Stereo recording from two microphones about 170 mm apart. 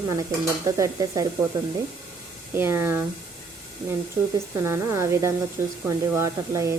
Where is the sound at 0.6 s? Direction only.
20° right (ahead or behind).